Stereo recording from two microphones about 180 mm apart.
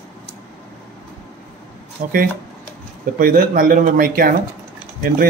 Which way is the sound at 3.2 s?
50° right (ahead or behind).